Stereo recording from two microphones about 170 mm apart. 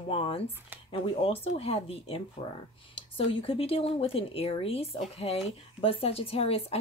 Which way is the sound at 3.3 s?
35° left (ahead or behind).